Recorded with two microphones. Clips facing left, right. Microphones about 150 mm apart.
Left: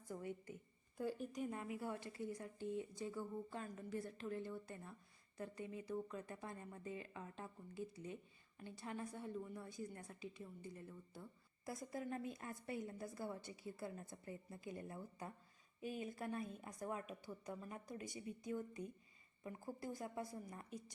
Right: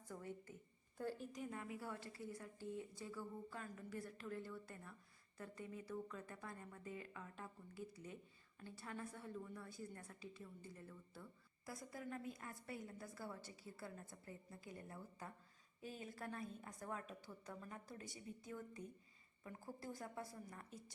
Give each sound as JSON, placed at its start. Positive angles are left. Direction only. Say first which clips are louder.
{"t": 0.1, "sound": "a woman's voice", "louder": "left 4 dB", "side_deg": 15}